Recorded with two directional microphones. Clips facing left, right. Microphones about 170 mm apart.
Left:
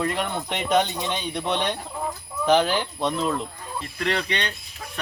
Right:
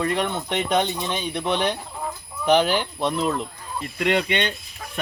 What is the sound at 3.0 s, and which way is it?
Speech, 5° right (ahead or behind).